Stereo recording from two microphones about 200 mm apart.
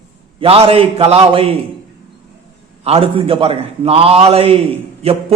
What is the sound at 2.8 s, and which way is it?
A man's voice, 30° right (ahead or behind).